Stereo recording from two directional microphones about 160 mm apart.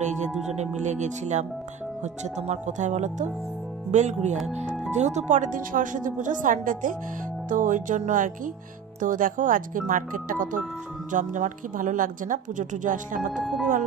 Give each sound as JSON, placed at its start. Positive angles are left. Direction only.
{"t": 0.5, "sound": "a woman's voice", "side_deg": -45}
{"t": 13.3, "sound": "speech", "side_deg": 0}